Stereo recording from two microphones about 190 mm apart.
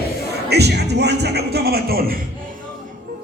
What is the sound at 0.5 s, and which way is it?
Music, 60° right (ahead or behind).